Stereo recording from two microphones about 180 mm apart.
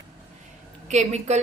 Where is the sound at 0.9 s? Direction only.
40° right (ahead or behind).